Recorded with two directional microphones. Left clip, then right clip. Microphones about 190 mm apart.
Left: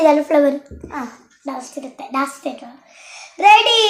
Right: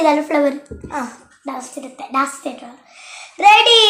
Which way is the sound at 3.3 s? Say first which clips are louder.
Right 1 dB; 20° left (ahead or behind).